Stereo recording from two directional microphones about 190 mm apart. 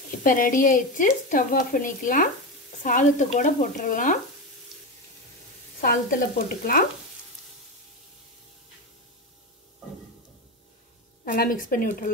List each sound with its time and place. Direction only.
0.2 s a woman's voice: 45° left (ahead or behind)
5.8 s a woman's voice: 50° left (ahead or behind)
11.2 s a woman's voice: 45° left (ahead or behind)